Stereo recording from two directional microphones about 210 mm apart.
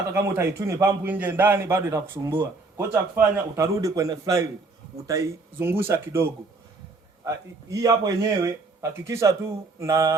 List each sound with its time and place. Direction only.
0.1 s a man's voice: 15° right (ahead or behind)